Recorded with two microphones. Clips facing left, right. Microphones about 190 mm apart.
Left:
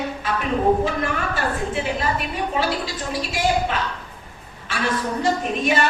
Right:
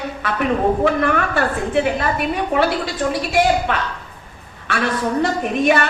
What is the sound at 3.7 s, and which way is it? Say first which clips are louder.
A woman's voice: right 3 dB; 60° right (ahead or behind).